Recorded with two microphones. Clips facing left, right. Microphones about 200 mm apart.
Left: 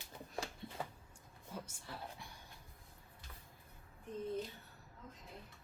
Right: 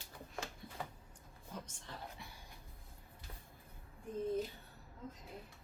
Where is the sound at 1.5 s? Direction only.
10° left (ahead or behind).